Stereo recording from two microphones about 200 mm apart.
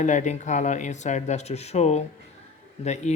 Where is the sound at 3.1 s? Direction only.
35° left (ahead or behind).